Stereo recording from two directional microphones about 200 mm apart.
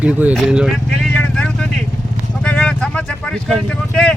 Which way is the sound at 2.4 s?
5° left (ahead or behind).